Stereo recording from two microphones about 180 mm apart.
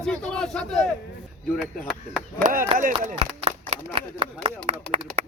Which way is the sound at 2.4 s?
50° right (ahead or behind).